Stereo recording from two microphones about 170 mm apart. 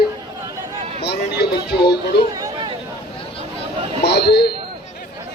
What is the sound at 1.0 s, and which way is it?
Speech, 75° left (ahead or behind).